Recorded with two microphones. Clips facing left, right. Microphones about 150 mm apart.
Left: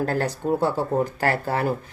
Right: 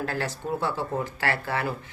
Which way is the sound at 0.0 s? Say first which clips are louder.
Left 6 dB; 45° left (ahead or behind).